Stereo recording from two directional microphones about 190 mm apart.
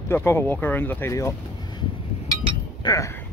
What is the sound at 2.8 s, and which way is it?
Speech, 20° left (ahead or behind).